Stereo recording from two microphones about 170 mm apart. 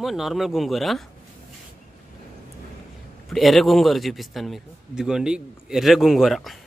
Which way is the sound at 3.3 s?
Centre (ahead or behind).